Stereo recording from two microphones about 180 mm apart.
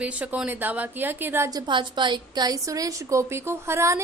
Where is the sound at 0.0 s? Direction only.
5° right (ahead or behind).